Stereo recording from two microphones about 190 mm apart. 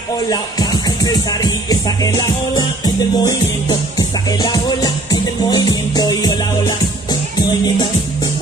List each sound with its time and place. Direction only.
0.3 s music: 20° left (ahead or behind)